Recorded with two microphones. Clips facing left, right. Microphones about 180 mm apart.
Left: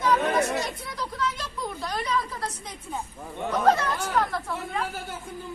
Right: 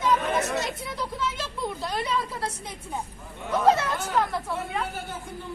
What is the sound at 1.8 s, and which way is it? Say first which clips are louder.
Speech: left 1 dB; 25° right (ahead or behind).